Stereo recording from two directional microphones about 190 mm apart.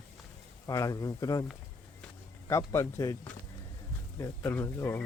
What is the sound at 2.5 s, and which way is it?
Speech, 15° left (ahead or behind).